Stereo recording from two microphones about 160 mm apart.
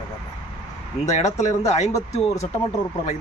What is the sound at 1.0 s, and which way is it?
Speech, 45° left (ahead or behind).